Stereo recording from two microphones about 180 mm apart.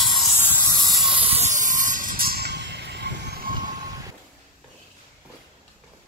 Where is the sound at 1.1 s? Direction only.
30° right (ahead or behind); by 3.5 s 70° right (ahead or behind).